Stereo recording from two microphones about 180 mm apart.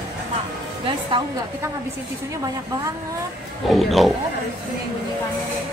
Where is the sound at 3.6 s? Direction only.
Centre (ahead or behind).